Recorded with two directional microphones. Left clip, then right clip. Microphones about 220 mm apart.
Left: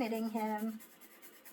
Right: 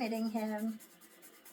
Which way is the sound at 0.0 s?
30° right (ahead or behind).